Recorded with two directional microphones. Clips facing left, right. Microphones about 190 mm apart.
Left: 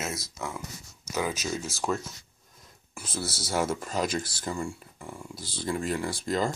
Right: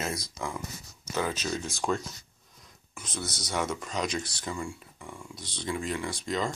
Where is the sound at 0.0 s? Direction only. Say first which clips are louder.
Right 1 dB; 5° left (ahead or behind).